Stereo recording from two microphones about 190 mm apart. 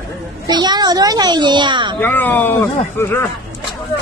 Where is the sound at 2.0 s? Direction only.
10° left (ahead or behind).